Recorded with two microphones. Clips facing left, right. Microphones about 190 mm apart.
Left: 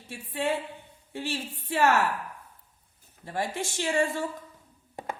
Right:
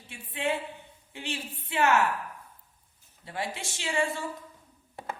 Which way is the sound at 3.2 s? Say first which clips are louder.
Left 4 dB; 50° left (ahead or behind).